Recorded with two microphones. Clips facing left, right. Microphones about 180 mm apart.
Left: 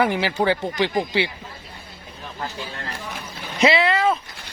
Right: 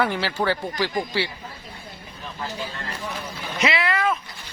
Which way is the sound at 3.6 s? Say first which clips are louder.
Left 5 dB; 25° left (ahead or behind).